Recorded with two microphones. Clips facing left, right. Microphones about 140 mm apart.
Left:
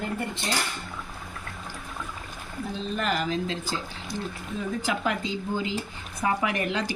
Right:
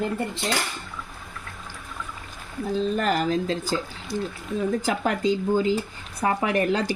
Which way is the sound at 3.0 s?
40° right (ahead or behind).